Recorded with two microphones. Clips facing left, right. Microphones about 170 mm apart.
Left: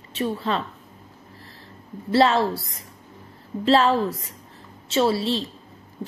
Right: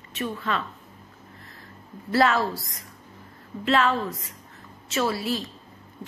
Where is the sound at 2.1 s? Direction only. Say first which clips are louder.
Left 3 dB; 30° left (ahead or behind).